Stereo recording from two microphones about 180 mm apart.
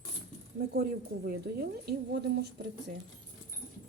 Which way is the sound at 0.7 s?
60° right (ahead or behind).